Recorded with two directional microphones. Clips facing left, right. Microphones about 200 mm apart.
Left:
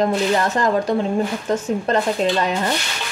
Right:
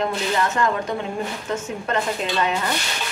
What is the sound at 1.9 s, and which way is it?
Speech, 35° left (ahead or behind).